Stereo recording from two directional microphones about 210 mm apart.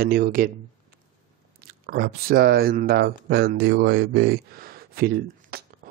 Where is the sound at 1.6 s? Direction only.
45° right (ahead or behind).